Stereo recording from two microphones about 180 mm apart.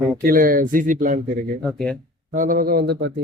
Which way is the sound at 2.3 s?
50° right (ahead or behind).